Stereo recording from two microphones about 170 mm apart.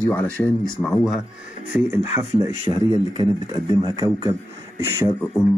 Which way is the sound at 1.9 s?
15° right (ahead or behind).